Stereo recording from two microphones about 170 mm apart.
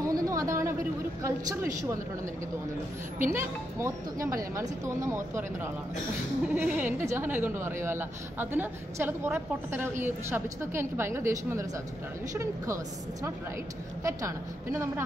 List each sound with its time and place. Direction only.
0.0 s a sound: 20° right (ahead or behind)
1.2 s a woman's voice: 20° right (ahead or behind)
3.3 s speech: 15° right (ahead or behind)